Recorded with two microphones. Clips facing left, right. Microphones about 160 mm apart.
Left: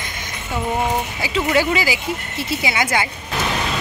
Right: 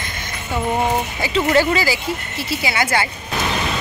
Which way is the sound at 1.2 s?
10° left (ahead or behind).